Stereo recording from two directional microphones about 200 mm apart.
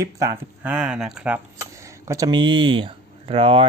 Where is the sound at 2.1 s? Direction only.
20° right (ahead or behind).